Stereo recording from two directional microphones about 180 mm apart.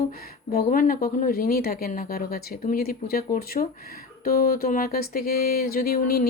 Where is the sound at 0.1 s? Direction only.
55° left (ahead or behind).